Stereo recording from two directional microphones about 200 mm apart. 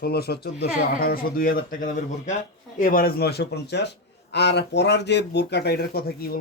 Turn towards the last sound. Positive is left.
turn(degrees=50)  # may be behind; listen again after turning